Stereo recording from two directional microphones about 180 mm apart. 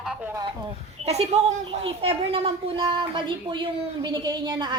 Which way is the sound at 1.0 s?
35° right (ahead or behind).